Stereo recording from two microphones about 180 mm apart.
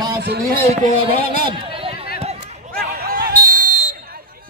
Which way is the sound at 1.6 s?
30° right (ahead or behind).